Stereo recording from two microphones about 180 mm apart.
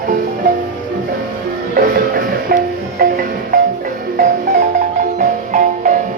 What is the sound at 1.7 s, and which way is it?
Music, 50° right (ahead or behind).